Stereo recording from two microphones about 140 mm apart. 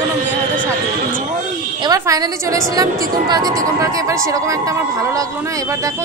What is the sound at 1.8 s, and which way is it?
A woman's voice, 25° right (ahead or behind).